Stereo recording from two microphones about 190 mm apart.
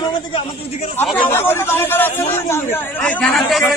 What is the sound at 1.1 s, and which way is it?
Speech, 10° left (ahead or behind).